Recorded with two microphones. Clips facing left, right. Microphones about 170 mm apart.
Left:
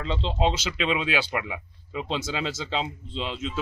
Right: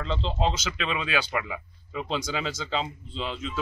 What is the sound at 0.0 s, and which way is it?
Speech, 5° left (ahead or behind).